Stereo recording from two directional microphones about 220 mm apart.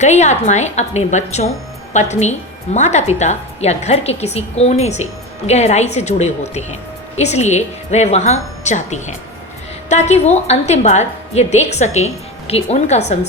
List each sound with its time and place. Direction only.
0.0 s a woman's voice: 30° left (ahead or behind)